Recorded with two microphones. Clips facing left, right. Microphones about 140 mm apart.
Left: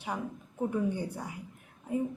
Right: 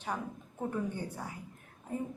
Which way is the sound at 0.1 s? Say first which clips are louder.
Left 2 dB; 10° left (ahead or behind).